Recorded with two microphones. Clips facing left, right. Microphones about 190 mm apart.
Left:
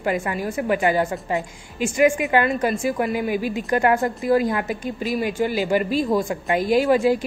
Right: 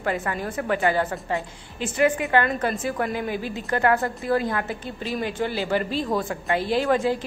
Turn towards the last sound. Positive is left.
turn(degrees=10)  # may be behind; listen again after turning